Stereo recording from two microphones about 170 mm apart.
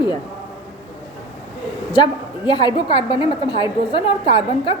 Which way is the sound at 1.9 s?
25° left (ahead or behind).